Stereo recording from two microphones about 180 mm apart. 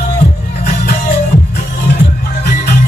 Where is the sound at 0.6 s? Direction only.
65° left (ahead or behind).